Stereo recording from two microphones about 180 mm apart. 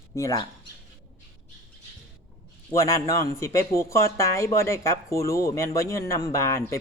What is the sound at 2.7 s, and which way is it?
Speech, 15° left (ahead or behind).